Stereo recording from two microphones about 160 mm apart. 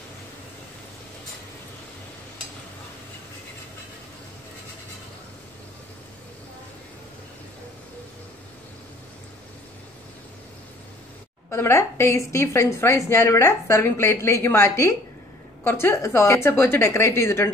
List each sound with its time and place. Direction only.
11.5 s a woman's voice: 15° left (ahead or behind)